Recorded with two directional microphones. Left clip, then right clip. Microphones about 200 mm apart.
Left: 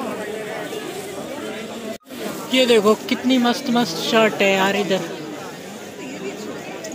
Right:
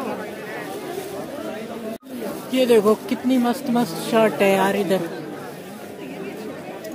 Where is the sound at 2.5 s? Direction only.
Centre (ahead or behind).